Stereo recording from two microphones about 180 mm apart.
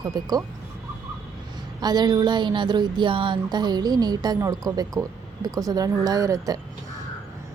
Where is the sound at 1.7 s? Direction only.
25° right (ahead or behind).